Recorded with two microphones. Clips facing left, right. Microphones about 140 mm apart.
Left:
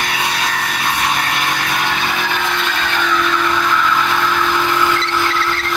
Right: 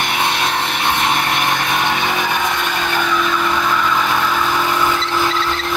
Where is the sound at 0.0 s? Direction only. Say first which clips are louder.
Right 2 dB; 25° right (ahead or behind).